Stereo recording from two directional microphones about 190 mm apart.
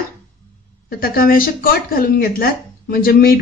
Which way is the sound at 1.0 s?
50° left (ahead or behind).